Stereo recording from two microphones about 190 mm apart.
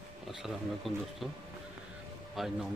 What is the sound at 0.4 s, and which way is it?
Speech, centre (ahead or behind).